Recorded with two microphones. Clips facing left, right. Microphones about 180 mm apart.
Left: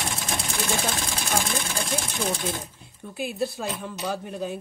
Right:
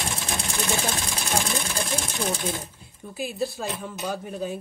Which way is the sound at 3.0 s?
Centre (ahead or behind).